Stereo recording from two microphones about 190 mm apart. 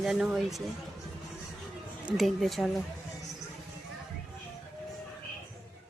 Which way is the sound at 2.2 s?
Centre (ahead or behind).